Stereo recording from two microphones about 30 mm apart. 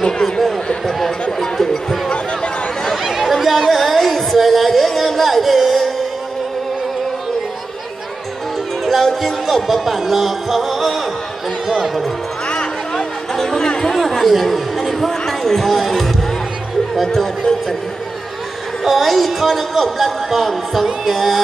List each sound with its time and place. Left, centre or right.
0.8 s speech: centre
1.4 s chatter: centre
3.0 s a sound: centre
8.8 s music: centre
11.6 s speech: centre
12.9 s music: centre
13.9 s speech: centre
17.1 s speech: centre
18.9 s speech: centre